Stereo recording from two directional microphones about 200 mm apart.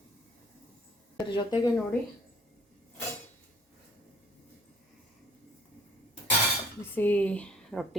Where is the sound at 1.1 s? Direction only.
20° left (ahead or behind).